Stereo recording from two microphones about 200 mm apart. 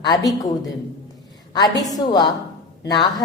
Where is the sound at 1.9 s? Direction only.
20° left (ahead or behind).